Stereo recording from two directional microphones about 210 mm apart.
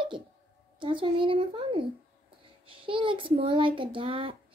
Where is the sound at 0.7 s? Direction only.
25° right (ahead or behind).